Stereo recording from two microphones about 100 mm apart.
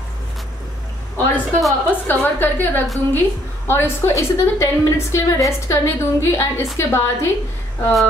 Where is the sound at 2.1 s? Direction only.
20° left (ahead or behind).